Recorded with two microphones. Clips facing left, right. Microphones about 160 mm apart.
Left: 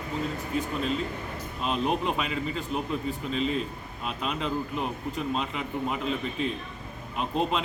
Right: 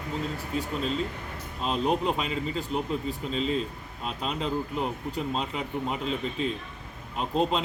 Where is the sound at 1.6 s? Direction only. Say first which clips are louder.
Right 1 dB; 35° right (ahead or behind).